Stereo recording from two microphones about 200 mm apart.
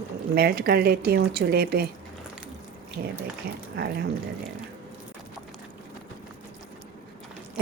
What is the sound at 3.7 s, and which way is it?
Speech, 50° right (ahead or behind).